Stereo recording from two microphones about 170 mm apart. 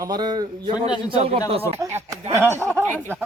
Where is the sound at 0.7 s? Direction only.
25° left (ahead or behind).